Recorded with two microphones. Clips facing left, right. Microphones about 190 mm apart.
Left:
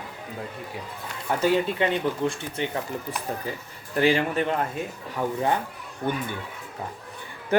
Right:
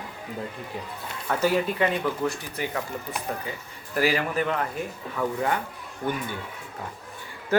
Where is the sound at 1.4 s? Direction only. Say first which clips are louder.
Left 1 dB; 25° left (ahead or behind).